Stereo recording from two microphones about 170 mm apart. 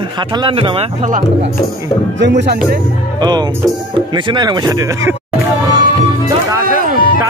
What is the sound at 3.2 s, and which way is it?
A man's voice, 25° right (ahead or behind).